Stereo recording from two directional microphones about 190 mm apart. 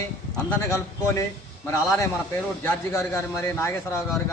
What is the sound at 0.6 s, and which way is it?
A man's voice, 15° left (ahead or behind).